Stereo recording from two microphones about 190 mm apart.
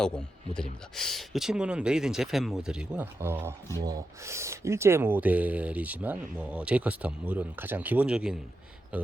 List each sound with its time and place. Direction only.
0.0 s speech: 5° left (ahead or behind)